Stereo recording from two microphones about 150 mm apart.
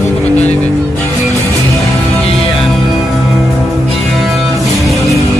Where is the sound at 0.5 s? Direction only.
10° left (ahead or behind).